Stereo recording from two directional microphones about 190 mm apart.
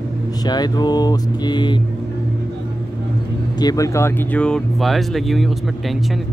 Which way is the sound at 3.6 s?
20° left (ahead or behind).